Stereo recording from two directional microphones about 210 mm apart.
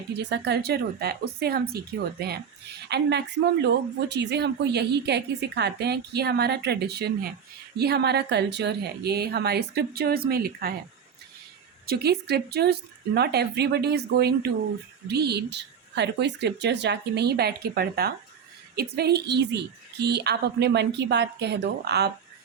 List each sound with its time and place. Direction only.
0.2 s a woman's voice: 55° right (ahead or behind)
11.9 s a woman's voice: 50° right (ahead or behind)